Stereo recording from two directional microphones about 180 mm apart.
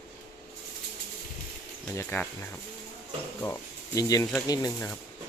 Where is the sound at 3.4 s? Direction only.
15° left (ahead or behind).